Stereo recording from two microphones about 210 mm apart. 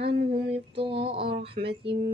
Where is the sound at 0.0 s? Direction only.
25° right (ahead or behind).